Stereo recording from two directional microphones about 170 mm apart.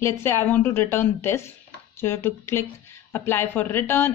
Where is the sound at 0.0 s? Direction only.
15° left (ahead or behind).